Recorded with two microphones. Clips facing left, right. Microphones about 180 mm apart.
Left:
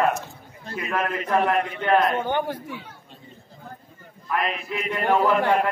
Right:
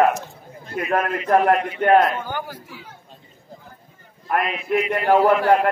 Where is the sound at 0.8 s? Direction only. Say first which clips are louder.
Right 4 dB; 50° right (ahead or behind).